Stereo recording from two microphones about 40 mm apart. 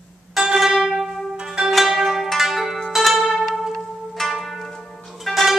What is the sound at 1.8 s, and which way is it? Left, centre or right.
Zither, centre.